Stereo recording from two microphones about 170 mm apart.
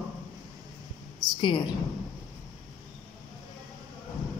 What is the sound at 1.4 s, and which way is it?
Speech, 30° left (ahead or behind).